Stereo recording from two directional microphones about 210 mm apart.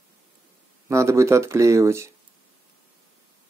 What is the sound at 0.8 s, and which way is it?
Speech, 15° right (ahead or behind).